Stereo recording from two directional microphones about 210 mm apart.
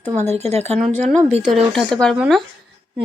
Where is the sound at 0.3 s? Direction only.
30° right (ahead or behind).